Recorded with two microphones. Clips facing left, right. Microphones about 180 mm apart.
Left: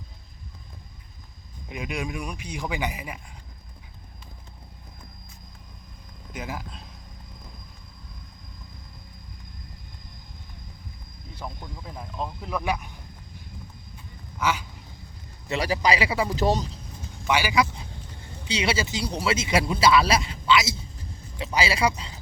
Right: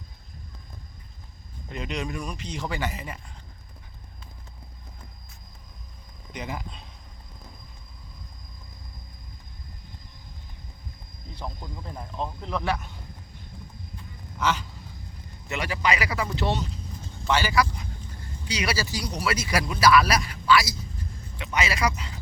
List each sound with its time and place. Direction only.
1.7 s speech: 10° left (ahead or behind)
6.3 s speech: 5° left (ahead or behind)
11.3 s speech: centre (ahead or behind)
14.3 s duck: 10° left (ahead or behind)
15.4 s speech: 35° left (ahead or behind)
16.4 s speech: 40° left (ahead or behind)
17.2 s speech: 10° left (ahead or behind); by 22.2 s 30° left (ahead or behind)